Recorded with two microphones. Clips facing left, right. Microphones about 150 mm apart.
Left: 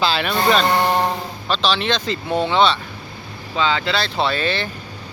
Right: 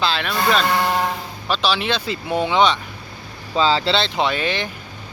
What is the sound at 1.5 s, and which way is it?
Speech, 10° right (ahead or behind).